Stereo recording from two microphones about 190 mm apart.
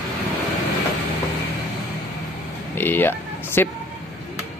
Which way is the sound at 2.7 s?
10° left (ahead or behind).